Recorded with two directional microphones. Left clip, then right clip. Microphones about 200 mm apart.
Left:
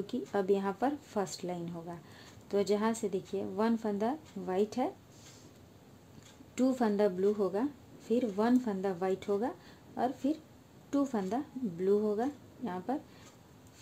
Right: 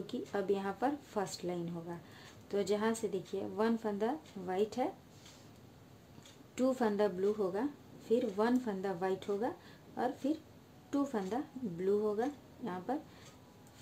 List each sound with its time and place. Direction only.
0.0 s speech: 30° left (ahead or behind)
6.5 s speech: 30° left (ahead or behind)